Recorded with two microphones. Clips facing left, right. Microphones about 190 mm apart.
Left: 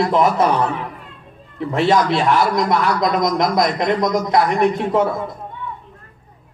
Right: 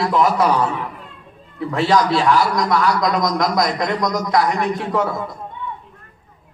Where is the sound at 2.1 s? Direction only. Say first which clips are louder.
Even; 55° left (ahead or behind).